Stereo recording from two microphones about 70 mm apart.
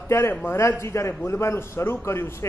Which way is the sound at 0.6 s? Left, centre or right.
Left.